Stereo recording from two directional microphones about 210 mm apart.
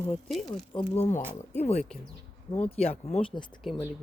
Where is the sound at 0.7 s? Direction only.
25° left (ahead or behind).